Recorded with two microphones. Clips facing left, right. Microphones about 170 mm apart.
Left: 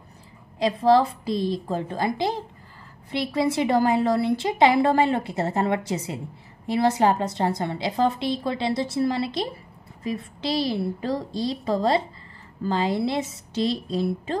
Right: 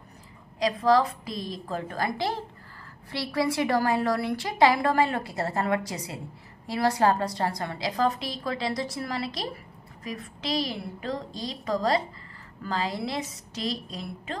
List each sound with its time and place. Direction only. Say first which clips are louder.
0.6 s a woman's voice: left 3 dB; 25° left (ahead or behind)